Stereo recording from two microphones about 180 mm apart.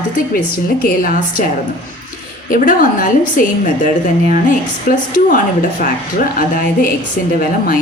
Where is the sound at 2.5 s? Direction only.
50° left (ahead or behind).